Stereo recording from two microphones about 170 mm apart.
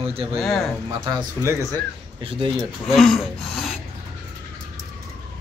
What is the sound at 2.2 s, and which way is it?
Speech, 30° right (ahead or behind).